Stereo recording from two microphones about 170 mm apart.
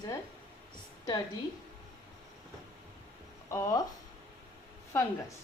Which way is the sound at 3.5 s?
15° left (ahead or behind).